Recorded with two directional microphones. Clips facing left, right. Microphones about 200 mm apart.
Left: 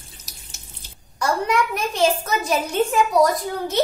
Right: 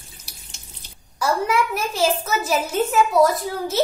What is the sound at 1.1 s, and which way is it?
A woman's voice, 5° right (ahead or behind).